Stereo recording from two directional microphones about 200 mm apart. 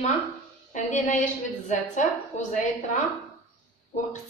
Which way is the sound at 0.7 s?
40° left (ahead or behind).